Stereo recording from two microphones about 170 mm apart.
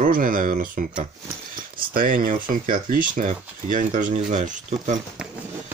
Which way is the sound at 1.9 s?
55° right (ahead or behind).